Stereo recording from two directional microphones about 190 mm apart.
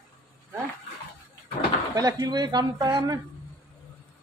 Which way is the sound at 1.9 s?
20° right (ahead or behind).